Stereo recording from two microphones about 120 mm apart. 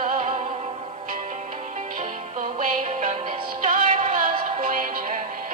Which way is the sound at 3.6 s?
90° right.